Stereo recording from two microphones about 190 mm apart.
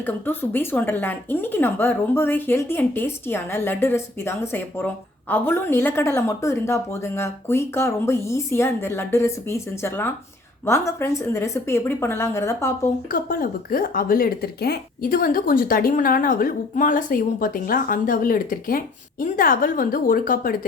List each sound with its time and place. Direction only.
0.0 s a woman's voice: 10° left (ahead or behind)
13.1 s speech: 50° left (ahead or behind)